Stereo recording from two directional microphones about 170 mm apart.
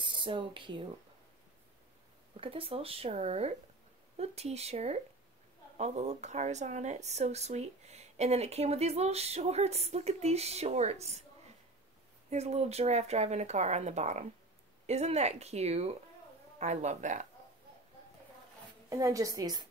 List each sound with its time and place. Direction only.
0.0 s speech: 30° right (ahead or behind)
2.3 s speech: 30° right (ahead or behind)
12.3 s speech: 40° right (ahead or behind)
18.9 s a woman's voice: 20° right (ahead or behind)